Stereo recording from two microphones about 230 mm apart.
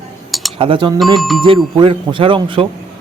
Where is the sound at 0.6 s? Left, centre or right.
Right.